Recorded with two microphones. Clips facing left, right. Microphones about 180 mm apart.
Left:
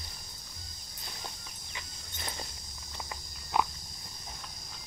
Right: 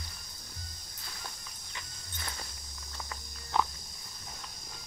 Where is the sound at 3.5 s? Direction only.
10° left (ahead or behind).